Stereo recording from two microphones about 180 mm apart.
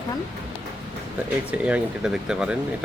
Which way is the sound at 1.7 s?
5° right (ahead or behind).